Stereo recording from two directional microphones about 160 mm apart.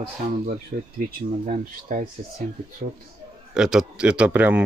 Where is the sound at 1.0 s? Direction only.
55° right (ahead or behind).